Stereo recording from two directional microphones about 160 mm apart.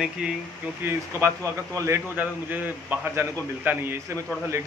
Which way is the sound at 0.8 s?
20° right (ahead or behind).